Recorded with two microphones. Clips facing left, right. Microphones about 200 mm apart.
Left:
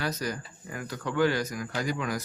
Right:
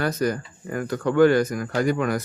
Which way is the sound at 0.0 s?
55° right (ahead or behind).